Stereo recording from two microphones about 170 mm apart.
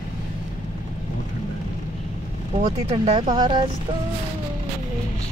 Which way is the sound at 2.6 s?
35° right (ahead or behind).